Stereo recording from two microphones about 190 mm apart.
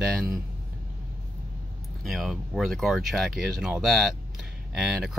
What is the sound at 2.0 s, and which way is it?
Speech, centre (ahead or behind).